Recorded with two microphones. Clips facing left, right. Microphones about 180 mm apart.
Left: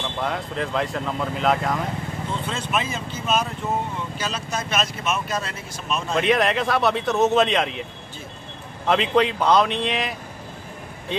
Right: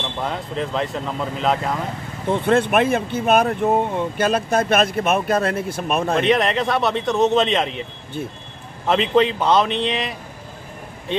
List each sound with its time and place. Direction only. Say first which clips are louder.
0.2 s a man's voice: right 1 dB; centre (ahead or behind)
2.2 s speech: right 15 dB; 60° right (ahead or behind)
6.2 s a man's voice: right 2 dB; centre (ahead or behind)
8.8 s a man's voice: right 2 dB; centre (ahead or behind)